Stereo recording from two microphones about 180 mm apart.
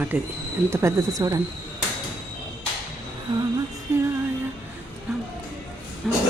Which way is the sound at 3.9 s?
15° right (ahead or behind).